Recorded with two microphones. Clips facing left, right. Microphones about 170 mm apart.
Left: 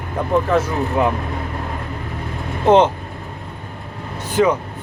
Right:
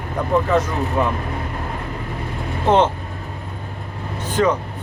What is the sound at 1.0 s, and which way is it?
Speech, 15° left (ahead or behind).